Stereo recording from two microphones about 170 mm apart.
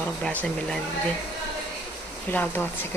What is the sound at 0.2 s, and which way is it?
Speech, 5° left (ahead or behind).